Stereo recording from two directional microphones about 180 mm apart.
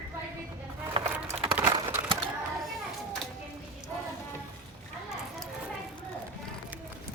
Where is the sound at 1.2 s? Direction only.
35° right (ahead or behind).